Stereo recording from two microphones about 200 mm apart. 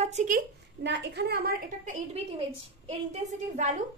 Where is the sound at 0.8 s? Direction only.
60° right (ahead or behind).